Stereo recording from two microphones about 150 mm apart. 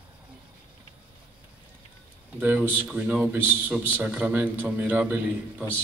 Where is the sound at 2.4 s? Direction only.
10° right (ahead or behind).